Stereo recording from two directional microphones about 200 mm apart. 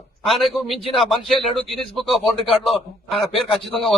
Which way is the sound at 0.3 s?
Centre (ahead or behind).